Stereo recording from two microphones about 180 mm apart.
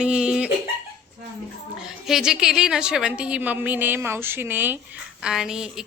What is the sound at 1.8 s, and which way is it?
A woman's voice, 5° right (ahead or behind).